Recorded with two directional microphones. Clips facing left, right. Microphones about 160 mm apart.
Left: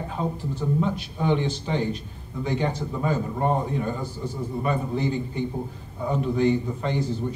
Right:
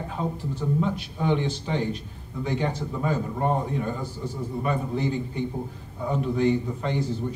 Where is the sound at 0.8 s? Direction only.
25° left (ahead or behind).